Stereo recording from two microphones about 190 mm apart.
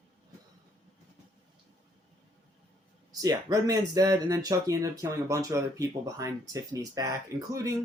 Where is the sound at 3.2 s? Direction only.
20° right (ahead or behind).